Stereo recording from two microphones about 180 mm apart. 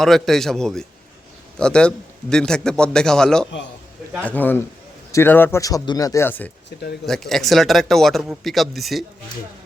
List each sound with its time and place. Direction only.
0.0 s speech: centre (ahead or behind)